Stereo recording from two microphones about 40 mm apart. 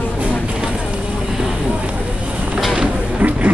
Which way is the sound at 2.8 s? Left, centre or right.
Right.